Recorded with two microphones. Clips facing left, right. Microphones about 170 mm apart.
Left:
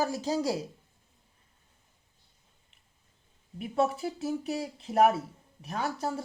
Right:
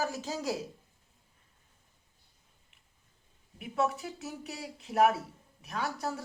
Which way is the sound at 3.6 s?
35° left (ahead or behind).